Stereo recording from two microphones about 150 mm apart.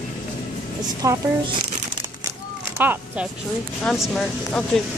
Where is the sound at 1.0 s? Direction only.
20° right (ahead or behind).